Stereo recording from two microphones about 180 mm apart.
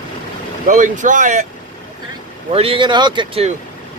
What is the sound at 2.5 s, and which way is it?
Speech, 30° right (ahead or behind).